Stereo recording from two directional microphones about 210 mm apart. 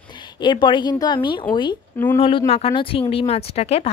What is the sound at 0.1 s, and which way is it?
A woman's voice, 20° left (ahead or behind).